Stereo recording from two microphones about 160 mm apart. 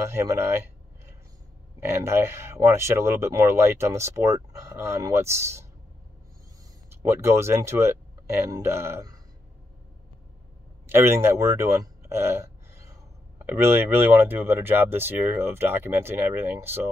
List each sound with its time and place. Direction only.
0.1 s speech: 15° right (ahead or behind)
1.9 s speech: 15° right (ahead or behind)
6.9 s speech: 15° right (ahead or behind)
10.9 s speech: 15° right (ahead or behind)